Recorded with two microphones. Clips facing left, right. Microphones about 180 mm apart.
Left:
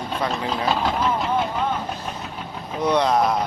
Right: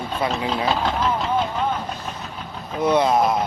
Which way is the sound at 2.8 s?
5° right (ahead or behind).